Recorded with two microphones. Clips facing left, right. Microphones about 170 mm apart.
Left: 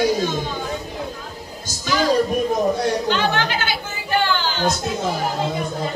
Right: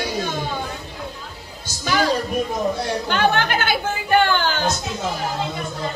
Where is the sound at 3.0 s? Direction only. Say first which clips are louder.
Right 1 dB; 55° right (ahead or behind).